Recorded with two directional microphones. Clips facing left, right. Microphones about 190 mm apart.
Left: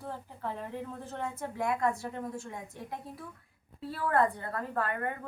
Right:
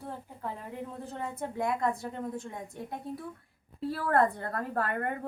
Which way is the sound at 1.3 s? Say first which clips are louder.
Right 2 dB; 20° right (ahead or behind).